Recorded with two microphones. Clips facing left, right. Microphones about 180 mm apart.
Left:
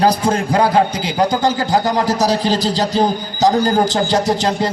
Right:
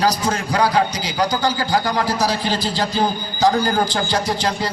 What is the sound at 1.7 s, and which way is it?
Speech, 20° left (ahead or behind).